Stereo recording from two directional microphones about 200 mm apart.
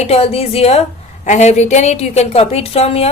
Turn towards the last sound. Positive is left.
turn(degrees=30)  # may be behind; listen again after turning